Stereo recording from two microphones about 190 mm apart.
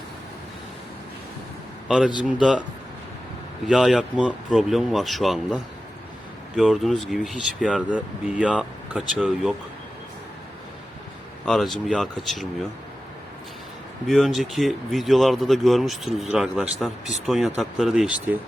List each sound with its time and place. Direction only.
2.2 s speech: 5° right (ahead or behind)
3.7 s speech: centre (ahead or behind)
6.6 s speech: centre (ahead or behind)
11.4 s speech: centre (ahead or behind)
14.1 s speech: centre (ahead or behind)